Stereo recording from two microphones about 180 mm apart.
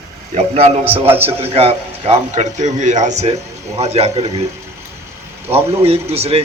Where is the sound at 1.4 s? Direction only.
35° right (ahead or behind).